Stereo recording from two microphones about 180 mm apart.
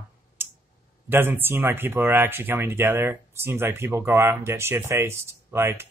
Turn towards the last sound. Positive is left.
turn(degrees=-15)  # may be behind; listen again after turning